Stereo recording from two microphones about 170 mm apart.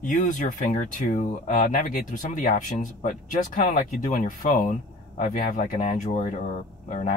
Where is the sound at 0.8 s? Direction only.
45° left (ahead or behind).